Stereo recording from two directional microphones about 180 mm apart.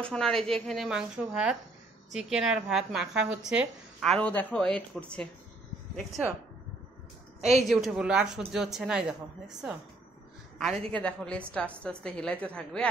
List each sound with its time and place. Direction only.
0.0 s a woman's voice: 5° left (ahead or behind)
7.6 s a woman's voice: centre (ahead or behind)
10.9 s a woman's voice: 5° left (ahead or behind)